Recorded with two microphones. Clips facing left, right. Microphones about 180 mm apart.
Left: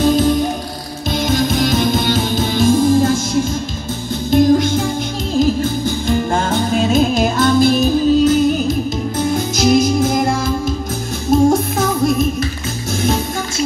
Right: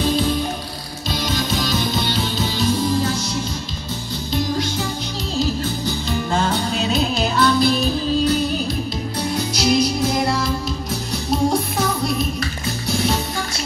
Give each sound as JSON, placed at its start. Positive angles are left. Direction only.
{"t": 1.1, "sound": "music", "side_deg": 50}
{"t": 4.3, "sound": "music", "side_deg": 50}